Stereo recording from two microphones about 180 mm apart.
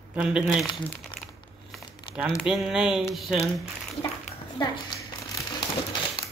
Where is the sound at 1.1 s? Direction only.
25° left (ahead or behind).